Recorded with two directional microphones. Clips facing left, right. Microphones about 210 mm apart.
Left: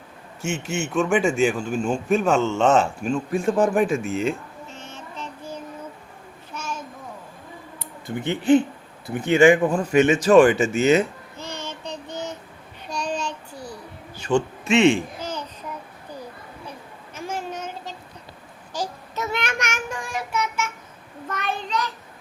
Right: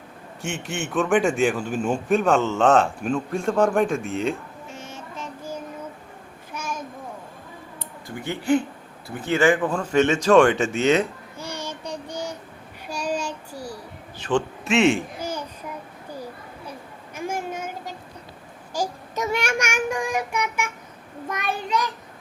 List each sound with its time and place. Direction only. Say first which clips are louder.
0.4 s a man's voice: left 3 dB; centre (ahead or behind)
4.7 s child singing: right 3 dB; 10° right (ahead or behind)
6.5 s a sound: right 1 dB; 10° right (ahead or behind)
8.0 s a man's voice: left 4 dB; 20° left (ahead or behind); by 11.0 s 5° left (ahead or behind)
11.3 s child singing: right 1 dB; 10° right (ahead or behind)
14.3 s babbling: left 2 dB; centre (ahead or behind)
17.2 s a sound: right 2 dB; 10° right (ahead or behind)
18.7 s child singing: right 2 dB; 10° right (ahead or behind)